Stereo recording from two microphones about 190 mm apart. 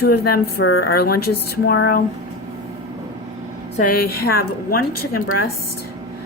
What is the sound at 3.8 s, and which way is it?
A woman's voice, 50° left (ahead or behind).